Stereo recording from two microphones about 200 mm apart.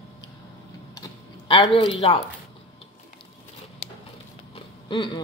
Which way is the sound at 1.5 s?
25° left (ahead or behind).